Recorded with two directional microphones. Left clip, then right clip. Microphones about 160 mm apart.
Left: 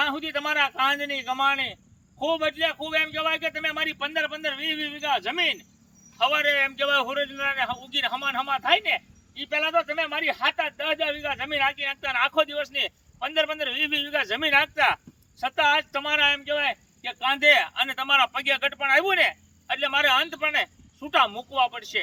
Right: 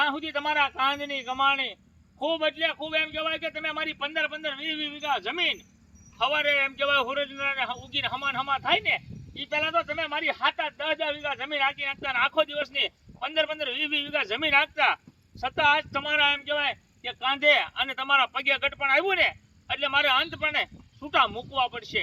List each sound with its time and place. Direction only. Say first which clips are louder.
0.0 s a man's voice: even; 10° left (ahead or behind)